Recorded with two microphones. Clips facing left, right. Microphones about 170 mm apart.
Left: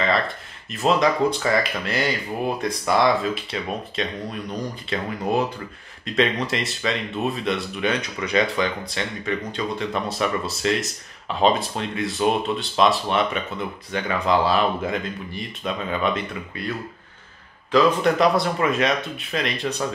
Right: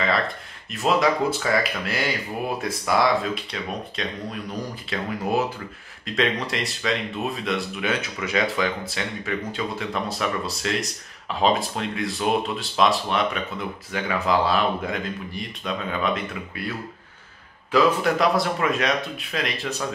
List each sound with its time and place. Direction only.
0.7 s speech: centre (ahead or behind)